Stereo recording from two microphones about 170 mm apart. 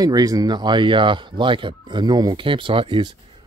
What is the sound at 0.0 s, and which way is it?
Speech, 20° right (ahead or behind).